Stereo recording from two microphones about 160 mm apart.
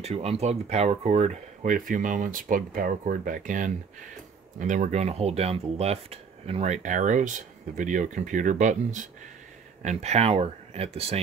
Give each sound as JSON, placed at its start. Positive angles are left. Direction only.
{"t": 0.0, "sound": "speech", "side_deg": -40}